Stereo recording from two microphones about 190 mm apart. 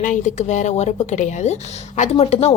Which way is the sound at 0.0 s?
40° left (ahead or behind).